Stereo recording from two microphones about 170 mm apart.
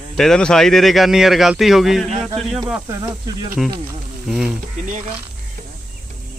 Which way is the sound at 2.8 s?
25° right (ahead or behind).